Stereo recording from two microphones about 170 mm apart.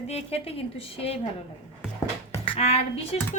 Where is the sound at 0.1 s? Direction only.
35° left (ahead or behind).